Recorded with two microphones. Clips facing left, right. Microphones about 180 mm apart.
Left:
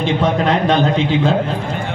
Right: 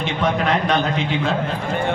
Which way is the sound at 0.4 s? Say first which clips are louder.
Left 4 dB; 30° left (ahead or behind).